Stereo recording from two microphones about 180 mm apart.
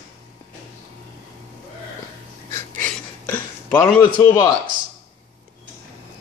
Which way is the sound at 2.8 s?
10° left (ahead or behind).